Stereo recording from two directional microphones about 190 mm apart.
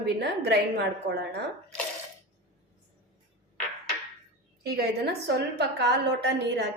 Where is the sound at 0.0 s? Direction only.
60° right (ahead or behind).